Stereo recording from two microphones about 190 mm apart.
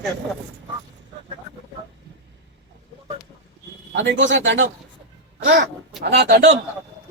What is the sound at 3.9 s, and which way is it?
Speech, 70° right (ahead or behind).